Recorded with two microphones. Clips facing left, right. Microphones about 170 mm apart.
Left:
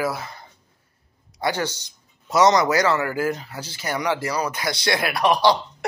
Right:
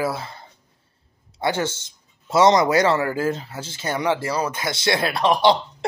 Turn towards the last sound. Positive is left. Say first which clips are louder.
# right 1 dB
turn(degrees=-25)  # may be behind; listen again after turning